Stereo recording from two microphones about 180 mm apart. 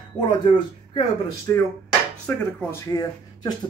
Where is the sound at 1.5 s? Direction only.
15° left (ahead or behind).